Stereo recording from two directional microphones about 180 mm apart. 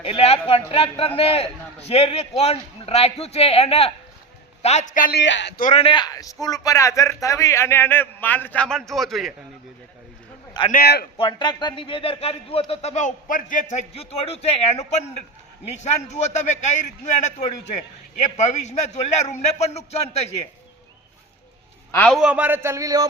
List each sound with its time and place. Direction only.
0.0 s a man's voice: 35° left (ahead or behind)
5.1 s speech: 80° left
5.5 s a man's voice: 45° left (ahead or behind)
5.8 s a man's voice: 25° left (ahead or behind); by 9.3 s centre (ahead or behind)
10.7 s a man's voice: 60° left (ahead or behind)
11.2 s a man's voice: 25° left (ahead or behind)
21.9 s a man's voice: 5° left (ahead or behind)
22.2 s speech: 5° right (ahead or behind)